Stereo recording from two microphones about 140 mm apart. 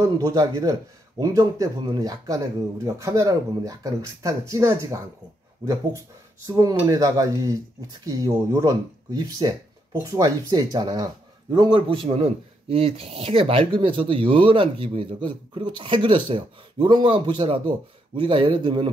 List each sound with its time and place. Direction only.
0.0 s speech: 25° right (ahead or behind)
6.4 s a man's voice: 25° right (ahead or behind)